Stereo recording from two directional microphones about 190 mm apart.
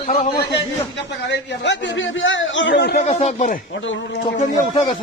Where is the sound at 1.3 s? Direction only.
70° left (ahead or behind).